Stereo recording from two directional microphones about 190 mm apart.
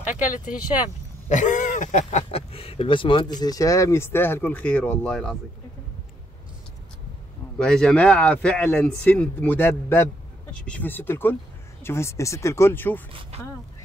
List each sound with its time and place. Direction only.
1.3 s speech: 40° left (ahead or behind); by 5.4 s 5° left (ahead or behind)
7.5 s speech: 5° left (ahead or behind)